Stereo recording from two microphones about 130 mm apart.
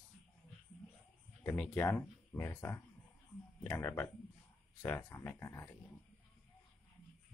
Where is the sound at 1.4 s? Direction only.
15° left (ahead or behind).